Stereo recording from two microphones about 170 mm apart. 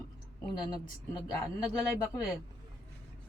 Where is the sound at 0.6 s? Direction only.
25° left (ahead or behind).